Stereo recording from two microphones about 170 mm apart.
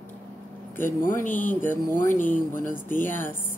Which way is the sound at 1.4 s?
10° left (ahead or behind).